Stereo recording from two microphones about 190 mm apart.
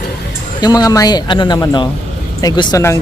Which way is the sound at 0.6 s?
20° left (ahead or behind).